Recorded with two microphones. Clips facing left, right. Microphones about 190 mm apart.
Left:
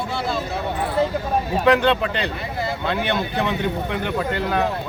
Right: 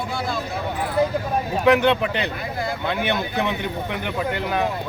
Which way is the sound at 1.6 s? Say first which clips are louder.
Right 1 dB; 15° right (ahead or behind).